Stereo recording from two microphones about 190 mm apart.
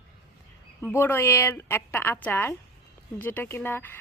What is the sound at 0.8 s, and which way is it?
Speech, 10° left (ahead or behind).